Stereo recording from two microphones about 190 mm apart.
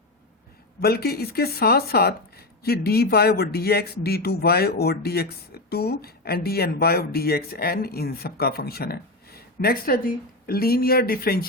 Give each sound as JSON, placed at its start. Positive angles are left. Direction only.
{"t": 0.8, "sound": "speech", "side_deg": 55}